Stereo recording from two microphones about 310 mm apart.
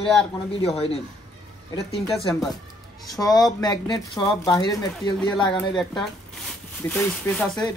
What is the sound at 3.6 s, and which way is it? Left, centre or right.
Speech, centre.